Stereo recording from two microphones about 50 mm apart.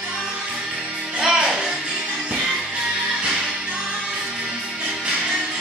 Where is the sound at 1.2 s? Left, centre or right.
Centre.